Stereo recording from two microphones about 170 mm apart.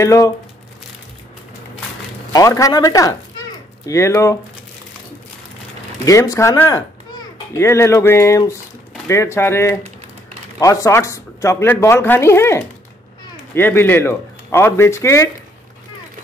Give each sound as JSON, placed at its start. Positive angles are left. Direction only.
{"t": 0.0, "sound": "speech", "side_deg": 20}
{"t": 2.3, "sound": "a man's voice", "side_deg": 20}
{"t": 6.0, "sound": "a child's voice", "side_deg": 20}